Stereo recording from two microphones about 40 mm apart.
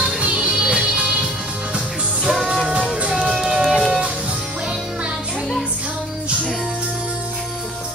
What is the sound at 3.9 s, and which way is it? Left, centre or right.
Music, right.